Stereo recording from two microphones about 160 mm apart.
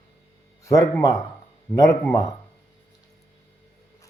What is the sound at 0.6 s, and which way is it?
Speech, 20° left (ahead or behind).